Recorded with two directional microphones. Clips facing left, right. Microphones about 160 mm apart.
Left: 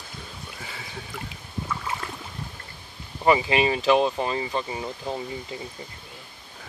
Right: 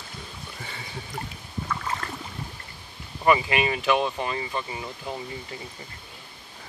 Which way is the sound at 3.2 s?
25° left (ahead or behind).